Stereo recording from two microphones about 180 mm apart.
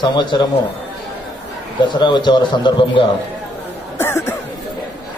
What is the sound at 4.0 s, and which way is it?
Cough, 15° left (ahead or behind).